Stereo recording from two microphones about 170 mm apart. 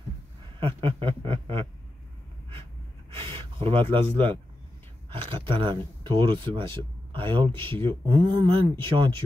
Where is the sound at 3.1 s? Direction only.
30° right (ahead or behind).